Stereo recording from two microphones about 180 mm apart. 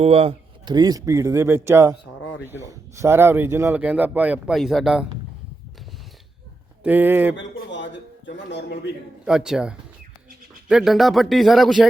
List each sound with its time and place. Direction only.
0.0 s speech: 30° right (ahead or behind); by 5.0 s centre (ahead or behind)
6.8 s speech: 10° right (ahead or behind)
7.3 s a sound: 85° left
8.4 s a man's voice: 70° left (ahead or behind)
9.2 s speech: 5° right (ahead or behind)